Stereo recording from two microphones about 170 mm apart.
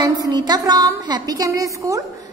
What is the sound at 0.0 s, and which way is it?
A woman's voice, 25° right (ahead or behind).